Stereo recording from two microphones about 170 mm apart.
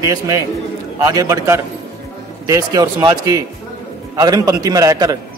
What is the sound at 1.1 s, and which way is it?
A man's voice, 20° right (ahead or behind).